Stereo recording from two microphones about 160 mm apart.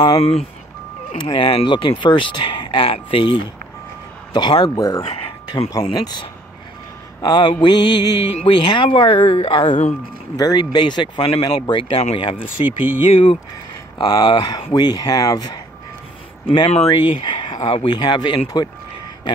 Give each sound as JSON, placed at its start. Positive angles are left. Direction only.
{"t": 0.0, "sound": "speech", "side_deg": 35}
{"t": 5.0, "sound": "a sound", "side_deg": 35}
{"t": 5.9, "sound": "speech", "side_deg": 25}
{"t": 7.2, "sound": "a sound", "side_deg": 25}
{"t": 7.6, "sound": "speech", "side_deg": 25}
{"t": 10.3, "sound": "speech", "side_deg": 25}
{"t": 12.6, "sound": "speech", "side_deg": -10}
{"t": 13.1, "sound": "speech", "side_deg": 35}
{"t": 16.6, "sound": "speech", "side_deg": 40}
{"t": 17.5, "sound": "a sound", "side_deg": 25}
{"t": 17.8, "sound": "speech", "side_deg": 25}